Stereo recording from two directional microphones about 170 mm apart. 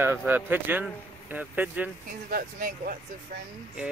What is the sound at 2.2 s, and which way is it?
Speech, 55° right (ahead or behind).